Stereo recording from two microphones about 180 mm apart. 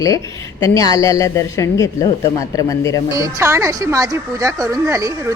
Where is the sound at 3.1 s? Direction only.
15° right (ahead or behind).